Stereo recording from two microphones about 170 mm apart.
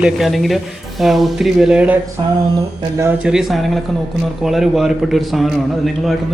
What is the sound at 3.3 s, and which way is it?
Mantra, centre (ahead or behind).